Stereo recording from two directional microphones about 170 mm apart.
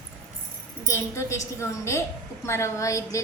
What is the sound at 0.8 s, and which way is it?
A woman's voice, 15° left (ahead or behind).